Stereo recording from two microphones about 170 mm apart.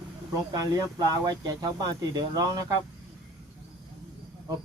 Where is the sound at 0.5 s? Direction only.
20° right (ahead or behind).